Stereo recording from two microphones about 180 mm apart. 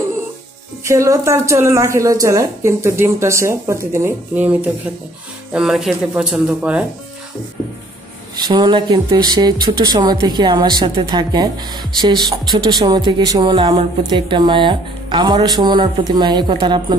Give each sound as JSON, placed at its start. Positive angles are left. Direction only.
{"t": 0.8, "sound": "speech", "side_deg": -15}
{"t": 8.4, "sound": "speech", "side_deg": -25}